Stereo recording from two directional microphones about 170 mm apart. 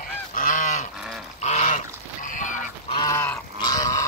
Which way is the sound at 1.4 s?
45° left (ahead or behind).